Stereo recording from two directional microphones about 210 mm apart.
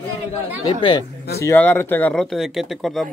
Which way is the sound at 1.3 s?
10° left (ahead or behind).